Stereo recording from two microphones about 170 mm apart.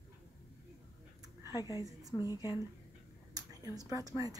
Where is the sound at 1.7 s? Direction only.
20° right (ahead or behind).